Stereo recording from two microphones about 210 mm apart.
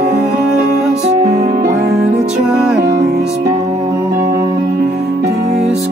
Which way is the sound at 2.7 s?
50° right (ahead or behind).